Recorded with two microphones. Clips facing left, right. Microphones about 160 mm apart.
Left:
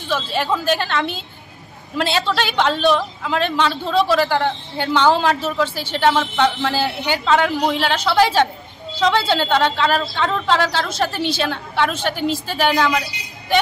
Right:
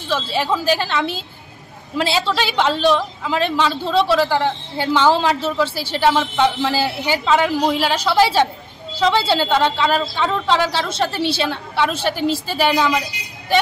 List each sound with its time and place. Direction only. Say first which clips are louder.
0.1 s a woman's voice: right 1 dB; centre (ahead or behind)
2.1 s a woman's voice: even; centre (ahead or behind)